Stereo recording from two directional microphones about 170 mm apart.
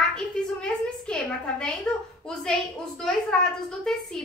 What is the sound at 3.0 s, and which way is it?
Speech, 5° left (ahead or behind).